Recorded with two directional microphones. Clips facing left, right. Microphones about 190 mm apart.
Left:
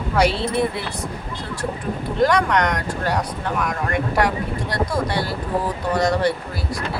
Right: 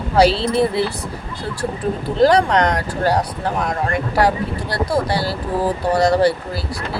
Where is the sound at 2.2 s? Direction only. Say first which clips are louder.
Right 4 dB; 30° right (ahead or behind).